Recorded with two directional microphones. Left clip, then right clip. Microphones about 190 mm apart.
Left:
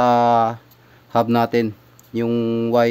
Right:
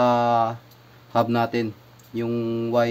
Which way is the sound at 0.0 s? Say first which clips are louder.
Left 4 dB; 60° left (ahead or behind).